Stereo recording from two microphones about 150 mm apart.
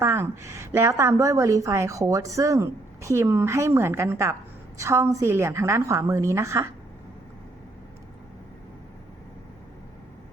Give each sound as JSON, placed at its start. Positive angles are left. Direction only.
{"t": 0.0, "sound": "a woman's voice", "side_deg": -20}